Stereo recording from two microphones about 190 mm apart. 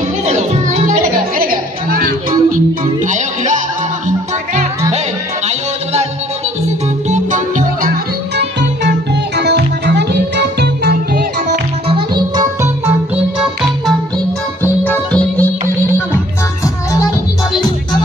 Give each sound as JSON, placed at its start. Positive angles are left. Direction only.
{"t": 0.2, "sound": "music", "side_deg": -35}
{"t": 1.4, "sound": "music", "side_deg": -50}
{"t": 7.1, "sound": "music", "side_deg": -40}
{"t": 8.5, "sound": "music", "side_deg": -65}
{"t": 11.9, "sound": "music", "side_deg": -20}
{"t": 14.8, "sound": "music", "side_deg": 10}
{"t": 16.6, "sound": "music", "side_deg": 15}